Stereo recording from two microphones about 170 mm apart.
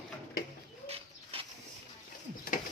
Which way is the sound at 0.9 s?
35° right (ahead or behind).